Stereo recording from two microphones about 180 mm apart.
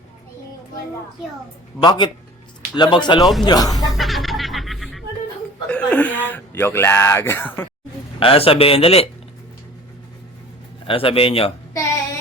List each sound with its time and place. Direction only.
1.8 s speech: 25° left (ahead or behind)
3.9 s music: centre (ahead or behind)
5.6 s speech: 5° left (ahead or behind)
8.2 s speech: 30° left (ahead or behind)
10.8 s speech: 30° left (ahead or behind)